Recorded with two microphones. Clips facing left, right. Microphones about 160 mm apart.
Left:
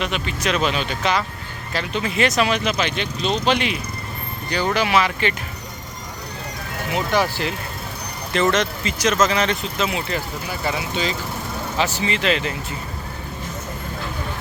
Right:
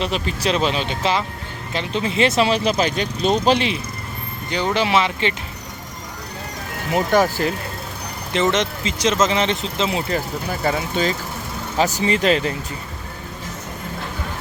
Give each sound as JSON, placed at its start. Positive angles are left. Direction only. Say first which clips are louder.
{"t": 0.0, "sound": "speech", "louder": "right 2 dB", "side_deg": -35}
{"t": 4.4, "sound": "speech", "louder": "right 1 dB", "side_deg": -20}
{"t": 6.9, "sound": "speech", "louder": "right 4 dB", "side_deg": -45}
{"t": 8.3, "sound": "speech", "louder": "even", "side_deg": -20}
{"t": 10.1, "sound": "speech", "louder": "right 3 dB", "side_deg": -40}